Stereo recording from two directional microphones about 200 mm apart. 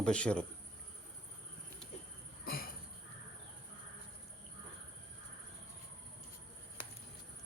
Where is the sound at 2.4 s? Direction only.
50° left (ahead or behind).